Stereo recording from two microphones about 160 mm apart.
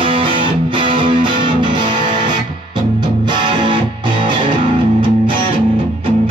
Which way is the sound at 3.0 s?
30° right (ahead or behind).